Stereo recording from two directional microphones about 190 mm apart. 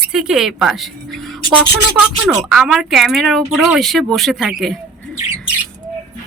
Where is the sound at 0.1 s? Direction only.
5° right (ahead or behind).